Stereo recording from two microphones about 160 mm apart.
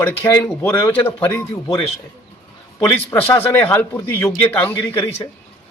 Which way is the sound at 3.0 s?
15° left (ahead or behind).